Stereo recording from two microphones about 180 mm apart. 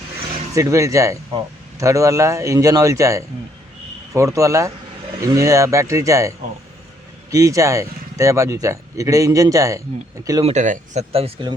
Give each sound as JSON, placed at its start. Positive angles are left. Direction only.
{"t": 0.5, "sound": "speech", "side_deg": -15}
{"t": 10.4, "sound": "speech", "side_deg": -40}